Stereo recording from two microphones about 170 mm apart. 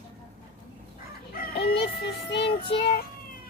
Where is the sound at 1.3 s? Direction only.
60° left (ahead or behind); by 2.5 s 80° left.